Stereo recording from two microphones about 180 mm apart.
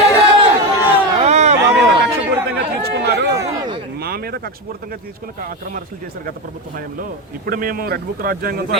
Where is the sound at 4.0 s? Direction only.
55° right (ahead or behind).